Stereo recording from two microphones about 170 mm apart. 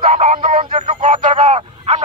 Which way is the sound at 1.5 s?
35° right (ahead or behind).